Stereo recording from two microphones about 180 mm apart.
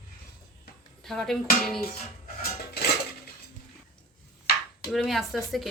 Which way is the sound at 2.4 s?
60° left (ahead or behind).